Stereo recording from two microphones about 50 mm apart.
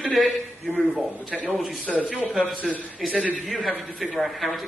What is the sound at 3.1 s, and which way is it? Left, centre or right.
Speech, right.